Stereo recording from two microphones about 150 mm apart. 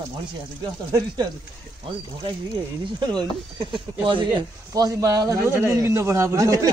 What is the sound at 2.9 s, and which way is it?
Speech, 30° right (ahead or behind).